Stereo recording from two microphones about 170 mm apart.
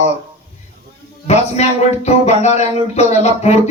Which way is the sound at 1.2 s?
40° left (ahead or behind).